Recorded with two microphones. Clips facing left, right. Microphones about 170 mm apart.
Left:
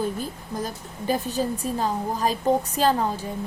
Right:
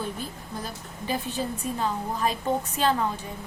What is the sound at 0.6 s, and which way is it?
A woman's voice, 45° left (ahead or behind).